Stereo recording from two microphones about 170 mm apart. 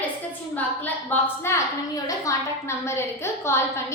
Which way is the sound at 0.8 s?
10° left (ahead or behind).